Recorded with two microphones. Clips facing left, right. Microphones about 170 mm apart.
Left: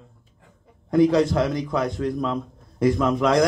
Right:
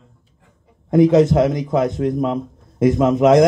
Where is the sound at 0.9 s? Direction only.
20° right (ahead or behind).